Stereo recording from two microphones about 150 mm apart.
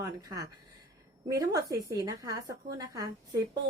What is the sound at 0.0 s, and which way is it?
A woman's voice, 25° right (ahead or behind).